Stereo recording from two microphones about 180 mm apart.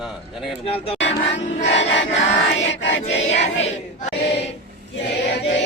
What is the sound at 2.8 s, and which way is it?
Choir, 85° left.